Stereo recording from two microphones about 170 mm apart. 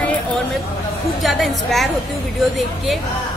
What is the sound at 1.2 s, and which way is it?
Speech, centre (ahead or behind).